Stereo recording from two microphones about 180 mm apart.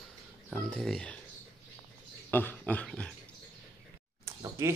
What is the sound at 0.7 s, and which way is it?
Speech, 5° left (ahead or behind).